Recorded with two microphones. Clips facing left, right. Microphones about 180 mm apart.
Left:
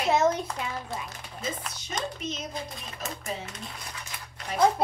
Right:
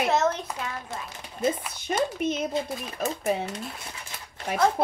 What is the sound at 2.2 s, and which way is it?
Speech, 55° right (ahead or behind).